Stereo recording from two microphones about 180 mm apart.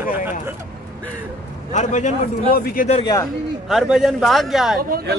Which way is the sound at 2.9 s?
30° left (ahead or behind).